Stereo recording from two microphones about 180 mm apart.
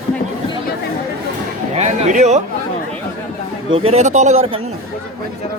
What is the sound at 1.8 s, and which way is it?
Speech, 40° right (ahead or behind).